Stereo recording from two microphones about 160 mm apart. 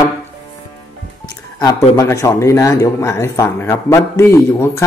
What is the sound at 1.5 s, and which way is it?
Speech, 20° left (ahead or behind).